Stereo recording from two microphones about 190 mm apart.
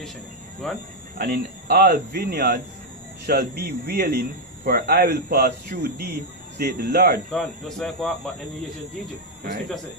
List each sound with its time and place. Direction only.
0.6 s speech: centre (ahead or behind)
1.1 s a man's voice: 55° right (ahead or behind)
7.2 s speech: centre (ahead or behind)